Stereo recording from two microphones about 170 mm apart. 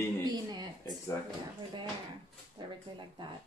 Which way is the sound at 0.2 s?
25° right (ahead or behind).